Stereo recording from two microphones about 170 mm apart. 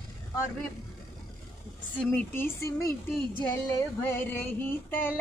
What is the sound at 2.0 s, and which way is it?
Female singing, 10° left (ahead or behind).